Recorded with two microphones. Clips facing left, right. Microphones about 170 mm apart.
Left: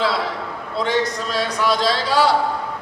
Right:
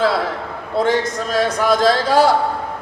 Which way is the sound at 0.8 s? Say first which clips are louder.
Right 3 dB; 45° right (ahead or behind).